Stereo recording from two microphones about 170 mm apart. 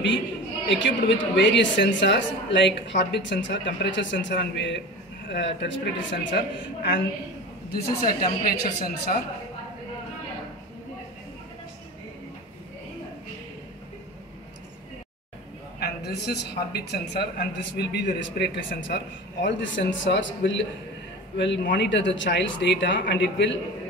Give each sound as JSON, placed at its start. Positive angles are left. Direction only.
{"t": 0.7, "sound": "a man's voice", "side_deg": 90}
{"t": 7.7, "sound": "speech", "side_deg": 60}
{"t": 15.8, "sound": "a man's voice", "side_deg": 80}